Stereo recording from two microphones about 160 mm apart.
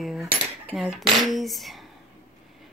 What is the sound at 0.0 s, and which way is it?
Cutlery, centre (ahead or behind).